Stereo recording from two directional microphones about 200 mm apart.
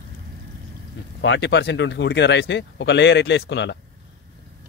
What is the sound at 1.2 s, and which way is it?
Speech, 65° left (ahead or behind).